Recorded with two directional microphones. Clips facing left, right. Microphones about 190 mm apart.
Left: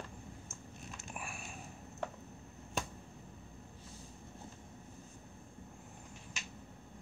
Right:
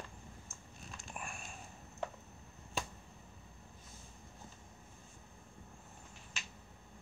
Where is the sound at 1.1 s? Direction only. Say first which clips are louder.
Even; 5° left (ahead or behind).